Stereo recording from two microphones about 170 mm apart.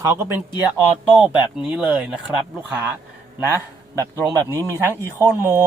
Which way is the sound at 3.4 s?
10° right (ahead or behind).